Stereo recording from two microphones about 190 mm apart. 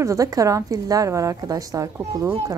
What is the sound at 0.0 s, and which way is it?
A woman's voice, 15° right (ahead or behind).